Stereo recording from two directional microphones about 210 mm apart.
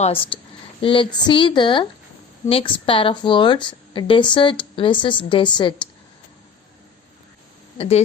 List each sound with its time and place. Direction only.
0.0 s a woman's voice: 25° left (ahead or behind)
7.8 s a woman's voice: 30° left (ahead or behind)